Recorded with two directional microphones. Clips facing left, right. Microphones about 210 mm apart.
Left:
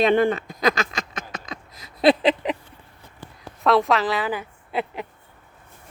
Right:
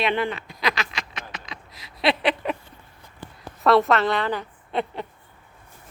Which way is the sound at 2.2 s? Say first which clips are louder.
Left 3 dB; 20° left (ahead or behind).